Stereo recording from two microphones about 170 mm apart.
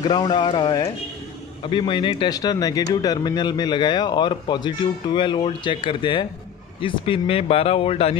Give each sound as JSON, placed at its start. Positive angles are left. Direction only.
{"t": 0.0, "sound": "speech", "side_deg": 25}